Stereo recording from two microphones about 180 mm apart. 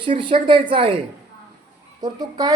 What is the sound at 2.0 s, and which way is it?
Speech, 20° right (ahead or behind).